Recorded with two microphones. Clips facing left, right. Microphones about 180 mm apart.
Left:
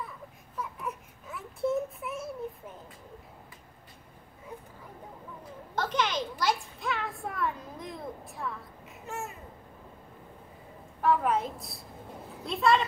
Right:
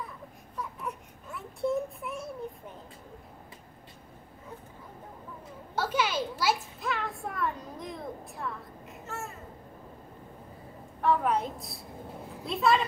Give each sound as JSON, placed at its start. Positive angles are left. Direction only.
{"t": 0.6, "sound": "baby cry", "side_deg": 0}
{"t": 5.8, "sound": "a sound", "side_deg": -5}
{"t": 9.0, "sound": "babbling", "side_deg": 15}
{"t": 11.0, "sound": "a woman's voice", "side_deg": 0}